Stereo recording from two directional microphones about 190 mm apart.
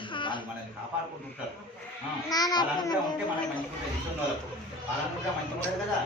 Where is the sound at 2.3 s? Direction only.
20° left (ahead or behind).